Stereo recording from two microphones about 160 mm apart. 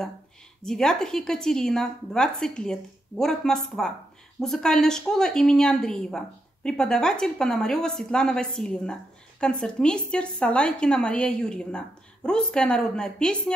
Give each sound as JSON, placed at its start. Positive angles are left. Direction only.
{"t": 0.6, "sound": "a woman's voice", "side_deg": 5}